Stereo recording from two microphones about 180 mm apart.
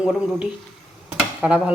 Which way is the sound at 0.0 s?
5° right (ahead or behind).